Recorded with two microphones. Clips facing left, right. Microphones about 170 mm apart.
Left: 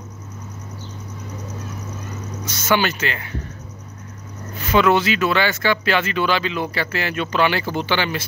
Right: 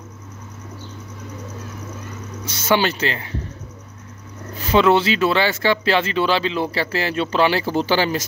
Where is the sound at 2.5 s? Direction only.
30° right (ahead or behind).